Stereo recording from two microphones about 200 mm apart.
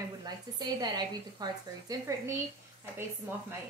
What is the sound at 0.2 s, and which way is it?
Speech, 20° right (ahead or behind).